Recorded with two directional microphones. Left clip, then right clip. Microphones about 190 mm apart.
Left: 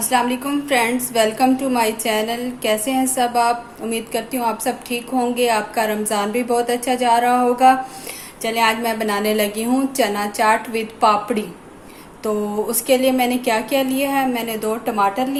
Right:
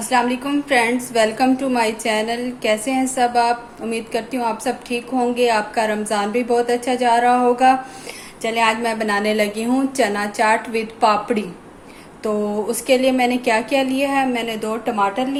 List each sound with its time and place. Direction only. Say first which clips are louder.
0.1 s a woman's voice: right 1 dB; 5° right (ahead or behind)